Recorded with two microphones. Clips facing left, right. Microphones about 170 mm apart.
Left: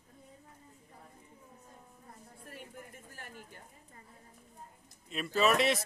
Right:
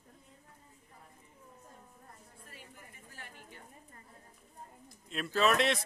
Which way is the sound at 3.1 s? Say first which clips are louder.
Left 1 dB; 45° left (ahead or behind).